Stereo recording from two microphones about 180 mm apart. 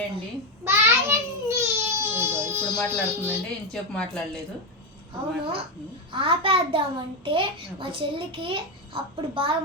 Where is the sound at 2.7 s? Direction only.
5° left (ahead or behind).